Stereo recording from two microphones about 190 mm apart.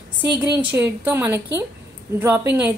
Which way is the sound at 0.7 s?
10° right (ahead or behind).